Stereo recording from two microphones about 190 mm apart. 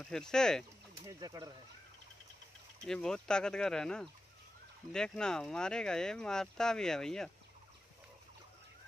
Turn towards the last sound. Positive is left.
turn(degrees=5)  # may be behind; listen again after turning